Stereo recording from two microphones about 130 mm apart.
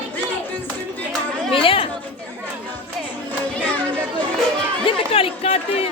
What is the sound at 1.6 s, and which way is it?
Speech, 45° left (ahead or behind).